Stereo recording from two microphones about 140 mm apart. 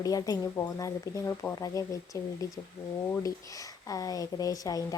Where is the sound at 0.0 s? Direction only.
25° left (ahead or behind).